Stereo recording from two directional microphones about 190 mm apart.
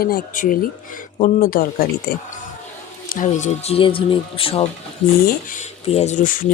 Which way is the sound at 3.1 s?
40° left (ahead or behind).